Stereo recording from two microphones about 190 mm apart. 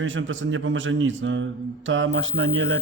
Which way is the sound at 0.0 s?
90° right.